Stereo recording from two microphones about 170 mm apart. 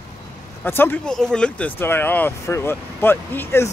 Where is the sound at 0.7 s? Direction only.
10° left (ahead or behind).